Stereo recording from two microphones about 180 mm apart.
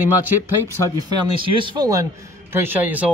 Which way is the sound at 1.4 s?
30° right (ahead or behind).